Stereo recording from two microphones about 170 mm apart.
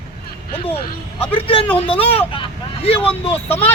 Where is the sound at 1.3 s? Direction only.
30° left (ahead or behind).